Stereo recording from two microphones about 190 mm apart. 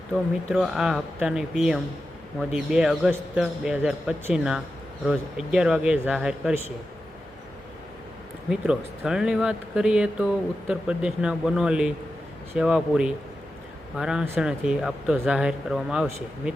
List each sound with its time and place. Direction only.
0.1 s speech: centre (ahead or behind)
8.4 s speech: 5° right (ahead or behind)